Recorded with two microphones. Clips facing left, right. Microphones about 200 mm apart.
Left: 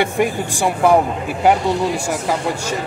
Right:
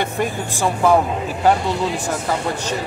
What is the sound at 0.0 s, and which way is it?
Speech, 15° left (ahead or behind).